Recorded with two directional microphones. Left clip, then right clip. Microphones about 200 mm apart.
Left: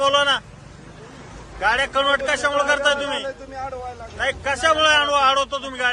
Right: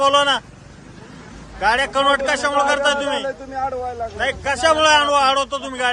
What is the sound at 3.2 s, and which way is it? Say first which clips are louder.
Speech: right 6 dB; 55° right (ahead or behind).